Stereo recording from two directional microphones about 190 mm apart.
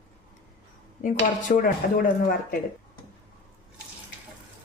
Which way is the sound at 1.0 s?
45° left (ahead or behind).